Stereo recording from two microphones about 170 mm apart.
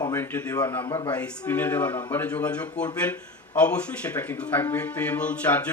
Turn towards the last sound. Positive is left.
turn(degrees=10)  # may be behind; listen again after turning